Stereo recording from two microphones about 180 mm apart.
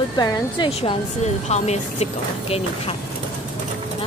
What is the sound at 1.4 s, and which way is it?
Speech, 40° left (ahead or behind).